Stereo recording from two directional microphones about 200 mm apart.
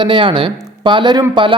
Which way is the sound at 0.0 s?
25° right (ahead or behind).